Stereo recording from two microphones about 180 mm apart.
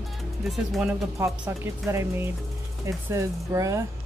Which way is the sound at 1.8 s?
15° right (ahead or behind).